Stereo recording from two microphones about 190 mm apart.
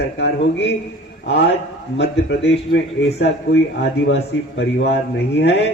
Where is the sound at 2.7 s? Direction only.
65° left (ahead or behind).